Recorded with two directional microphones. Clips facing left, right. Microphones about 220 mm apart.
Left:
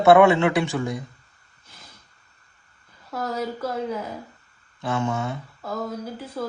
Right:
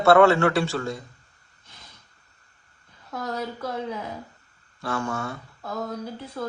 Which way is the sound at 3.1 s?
5° left (ahead or behind).